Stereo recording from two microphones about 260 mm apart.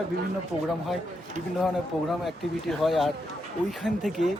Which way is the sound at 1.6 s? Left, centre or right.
Centre.